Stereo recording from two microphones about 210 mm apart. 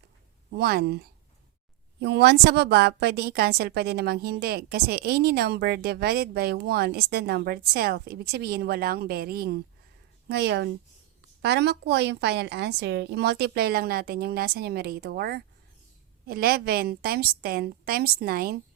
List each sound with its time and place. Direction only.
0.5 s a woman's voice: 50° right (ahead or behind)